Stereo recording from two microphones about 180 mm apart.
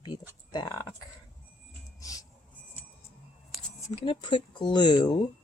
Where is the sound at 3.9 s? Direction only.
30° left (ahead or behind).